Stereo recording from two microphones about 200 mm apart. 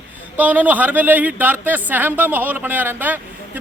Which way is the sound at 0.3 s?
10° right (ahead or behind).